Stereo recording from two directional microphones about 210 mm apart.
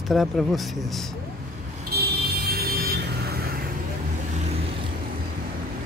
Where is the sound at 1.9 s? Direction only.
50° right (ahead or behind).